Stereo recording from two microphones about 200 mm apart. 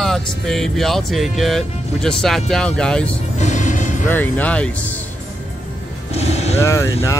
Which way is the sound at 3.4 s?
35° left (ahead or behind).